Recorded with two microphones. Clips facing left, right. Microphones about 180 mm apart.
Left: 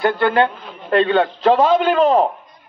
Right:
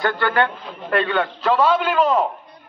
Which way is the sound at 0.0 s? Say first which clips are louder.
Left 4 dB; 20° left (ahead or behind).